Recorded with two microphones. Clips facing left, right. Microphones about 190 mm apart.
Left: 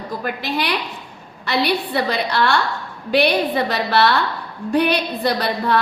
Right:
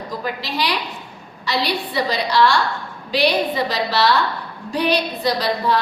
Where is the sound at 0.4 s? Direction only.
55° left (ahead or behind).